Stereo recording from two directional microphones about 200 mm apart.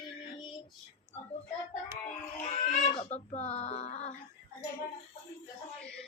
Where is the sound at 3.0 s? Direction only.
30° left (ahead or behind).